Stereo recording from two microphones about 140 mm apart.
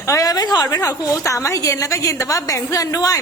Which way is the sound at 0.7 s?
25° left (ahead or behind).